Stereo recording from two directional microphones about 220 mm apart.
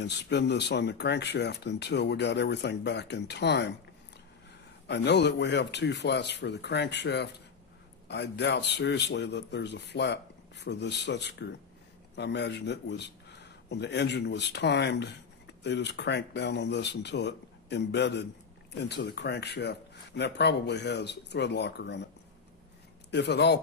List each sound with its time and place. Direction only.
0.0 s a man's voice: 50° left (ahead or behind)
4.8 s a man's voice: 50° left (ahead or behind)
23.1 s a man's voice: 50° left (ahead or behind)